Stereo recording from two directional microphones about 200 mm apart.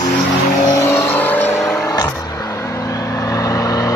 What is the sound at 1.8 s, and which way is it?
Vehicle, 20° left (ahead or behind).